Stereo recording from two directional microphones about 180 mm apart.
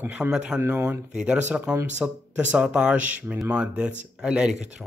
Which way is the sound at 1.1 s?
5° right (ahead or behind).